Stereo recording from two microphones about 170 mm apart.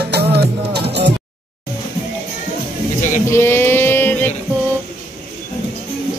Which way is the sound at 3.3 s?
15° left (ahead or behind).